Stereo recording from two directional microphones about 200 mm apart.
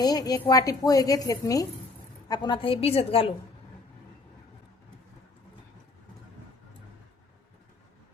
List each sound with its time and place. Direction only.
0.0 s a woman's voice: 20° left (ahead or behind)